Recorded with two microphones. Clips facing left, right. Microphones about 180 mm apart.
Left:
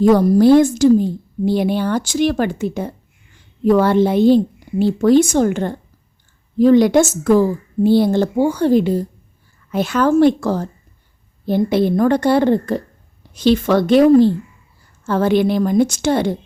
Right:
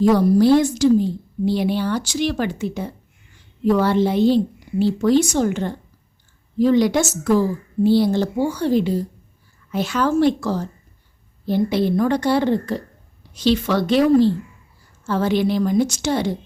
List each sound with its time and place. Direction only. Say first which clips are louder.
0.0 s a woman's voice: left 3 dB; 50° left (ahead or behind)